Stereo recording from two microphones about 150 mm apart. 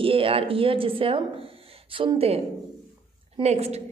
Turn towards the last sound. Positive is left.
turn(degrees=-45)  # may be behind; listen again after turning